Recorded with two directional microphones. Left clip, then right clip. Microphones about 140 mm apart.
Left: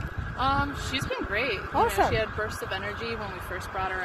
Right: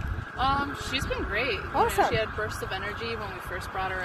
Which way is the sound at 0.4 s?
50° left (ahead or behind).